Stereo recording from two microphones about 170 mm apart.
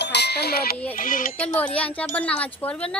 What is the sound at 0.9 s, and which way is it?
Speech, 55° left (ahead or behind).